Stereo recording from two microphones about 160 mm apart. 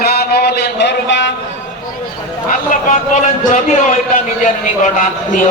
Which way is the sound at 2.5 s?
55° left (ahead or behind).